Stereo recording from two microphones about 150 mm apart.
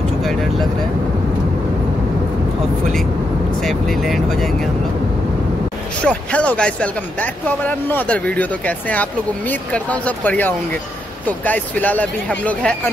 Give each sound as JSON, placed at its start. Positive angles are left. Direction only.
{"t": 0.2, "sound": "vehicle", "side_deg": 0}
{"t": 3.6, "sound": "speech", "side_deg": 0}
{"t": 6.0, "sound": "speech", "side_deg": 10}